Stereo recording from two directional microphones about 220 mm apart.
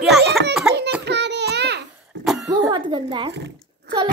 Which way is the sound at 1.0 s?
50° right (ahead or behind).